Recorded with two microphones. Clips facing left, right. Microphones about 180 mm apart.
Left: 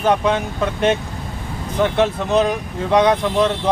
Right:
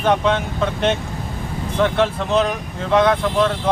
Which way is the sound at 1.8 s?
15° left (ahead or behind).